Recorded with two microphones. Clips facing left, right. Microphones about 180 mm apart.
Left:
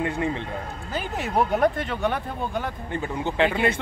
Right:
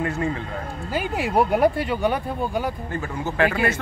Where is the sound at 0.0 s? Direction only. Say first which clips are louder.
Right 1 dB; 20° left (ahead or behind).